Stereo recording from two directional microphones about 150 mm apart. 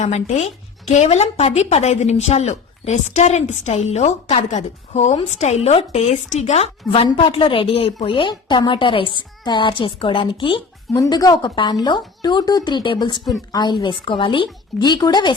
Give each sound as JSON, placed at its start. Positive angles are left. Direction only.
{"t": 0.0, "sound": "a woman's voice", "side_deg": 50}